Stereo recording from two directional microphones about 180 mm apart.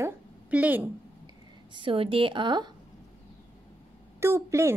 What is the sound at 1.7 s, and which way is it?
A woman's voice, 30° right (ahead or behind).